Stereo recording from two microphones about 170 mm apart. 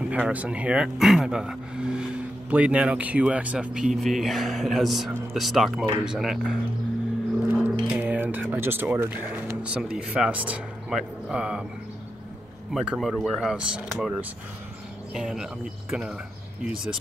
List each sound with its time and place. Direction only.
0.1 s speech: 10° right (ahead or behind)
7.4 s a sound: 10° right (ahead or behind)
7.8 s speech: 10° right (ahead or behind)
12.7 s speech: centre (ahead or behind)
15.1 s speech: centre (ahead or behind)